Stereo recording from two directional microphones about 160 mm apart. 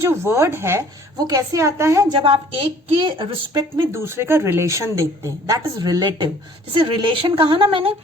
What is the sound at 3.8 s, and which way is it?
A woman's voice, 15° right (ahead or behind).